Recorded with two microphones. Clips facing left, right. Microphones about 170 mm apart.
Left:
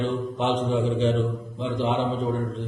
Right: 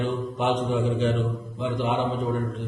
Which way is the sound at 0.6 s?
30° left (ahead or behind).